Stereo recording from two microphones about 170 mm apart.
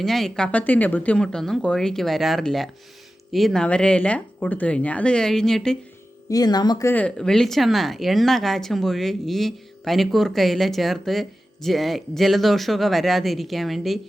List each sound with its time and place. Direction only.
0.0 s speech: centre (ahead or behind)
6.3 s speech: 25° left (ahead or behind)
6.9 s speech: 5° left (ahead or behind)